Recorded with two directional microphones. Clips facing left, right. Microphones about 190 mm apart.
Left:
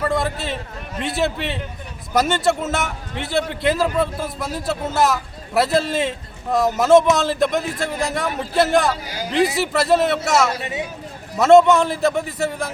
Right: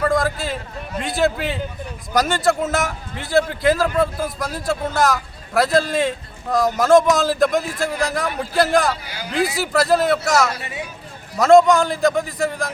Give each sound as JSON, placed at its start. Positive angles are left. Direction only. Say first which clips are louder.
{"t": 0.2, "sound": "a man's voice", "louder": "right 1 dB", "side_deg": 0}
{"t": 10.6, "sound": "speech", "louder": "left 4 dB", "side_deg": 20}
{"t": 11.3, "sound": "a man's voice", "louder": "even", "side_deg": 0}